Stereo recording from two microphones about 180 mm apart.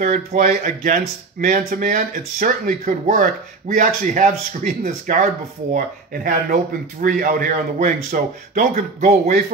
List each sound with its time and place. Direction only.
0.0 s speech: 45° right (ahead or behind)